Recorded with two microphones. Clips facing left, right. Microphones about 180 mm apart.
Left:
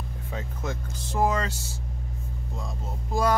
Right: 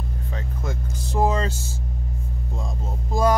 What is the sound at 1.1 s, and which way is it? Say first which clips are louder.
Speech: right 3 dB; 25° right (ahead or behind).